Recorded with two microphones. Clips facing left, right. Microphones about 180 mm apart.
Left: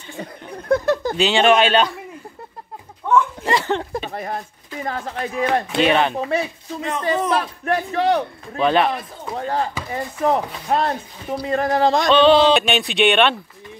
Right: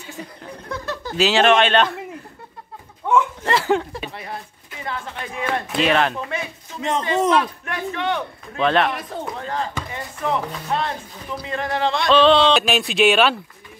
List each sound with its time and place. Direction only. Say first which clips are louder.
0.7 s a sound: left 12 dB; 45° left (ahead or behind)
1.1 s speech: right 1 dB; centre (ahead or behind)
3.4 s a sound: right 1 dB; 5° right (ahead or behind)
3.9 s speech: left 5 dB; 45° left (ahead or behind)
5.7 s speech: right 1 dB; centre (ahead or behind)
6.1 s speech: left 6 dB; 35° left (ahead or behind)
6.9 s speech: right 1 dB; 25° right (ahead or behind)
7.6 s speech: left 6 dB; 35° left (ahead or behind)
8.5 s speech: left 1 dB; 5° left (ahead or behind)
9.3 s speech: left 6 dB; 35° left (ahead or behind)
12.1 s speech: even; centre (ahead or behind)